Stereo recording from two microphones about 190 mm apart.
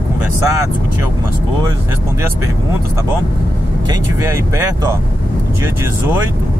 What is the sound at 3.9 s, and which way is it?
Speech, 15° right (ahead or behind).